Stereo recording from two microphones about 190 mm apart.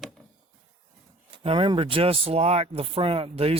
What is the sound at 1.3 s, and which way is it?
Speech, 25° right (ahead or behind).